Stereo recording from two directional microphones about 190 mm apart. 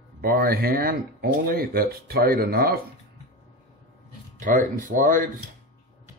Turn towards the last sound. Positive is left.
turn(degrees=-45)  # may be behind; listen again after turning